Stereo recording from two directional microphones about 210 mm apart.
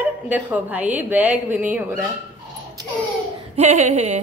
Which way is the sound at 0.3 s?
5° right (ahead or behind).